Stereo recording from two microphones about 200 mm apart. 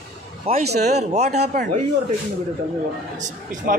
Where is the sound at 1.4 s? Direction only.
45° right (ahead or behind).